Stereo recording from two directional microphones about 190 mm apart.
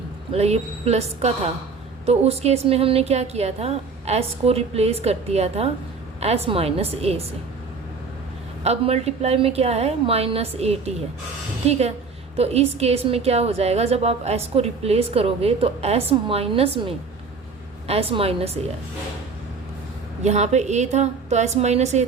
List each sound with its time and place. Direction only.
0.3 s a woman's voice: 35° right (ahead or behind)
8.6 s a woman's voice: 35° right (ahead or behind)
20.2 s a woman's voice: 35° right (ahead or behind)